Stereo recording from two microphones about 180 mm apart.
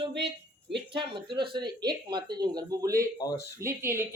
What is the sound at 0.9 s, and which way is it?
Speech, 30° right (ahead or behind).